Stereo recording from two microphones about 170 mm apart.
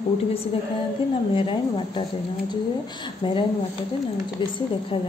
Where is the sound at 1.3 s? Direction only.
30° left (ahead or behind).